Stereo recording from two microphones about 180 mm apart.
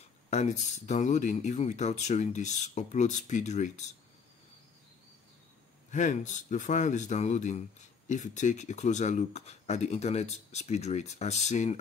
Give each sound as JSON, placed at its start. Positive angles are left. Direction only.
{"t": 0.3, "sound": "speech", "side_deg": 40}
{"t": 5.9, "sound": "a man's voice", "side_deg": 45}